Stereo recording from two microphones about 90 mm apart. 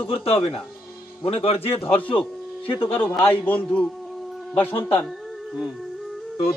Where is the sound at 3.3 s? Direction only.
15° left (ahead or behind).